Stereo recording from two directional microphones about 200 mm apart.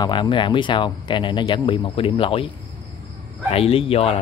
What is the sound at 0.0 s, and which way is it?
Speech, 25° left (ahead or behind).